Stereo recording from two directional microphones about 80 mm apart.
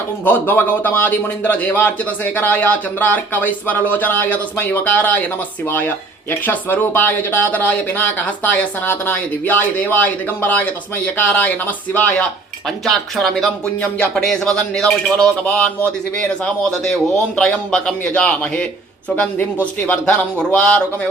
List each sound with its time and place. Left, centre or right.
0.3 s a man's voice: left
12.8 s speech: centre
20.1 s speech: centre